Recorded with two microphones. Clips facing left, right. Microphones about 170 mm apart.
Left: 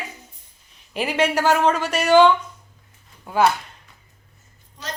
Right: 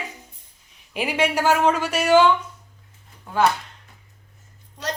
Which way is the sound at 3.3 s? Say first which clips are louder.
Left 2 dB; 10° left (ahead or behind).